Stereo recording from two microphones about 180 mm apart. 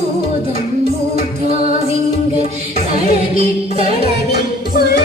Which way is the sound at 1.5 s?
50° left (ahead or behind).